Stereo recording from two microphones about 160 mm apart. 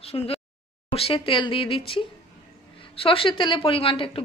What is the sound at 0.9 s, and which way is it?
Speech, 35° left (ahead or behind).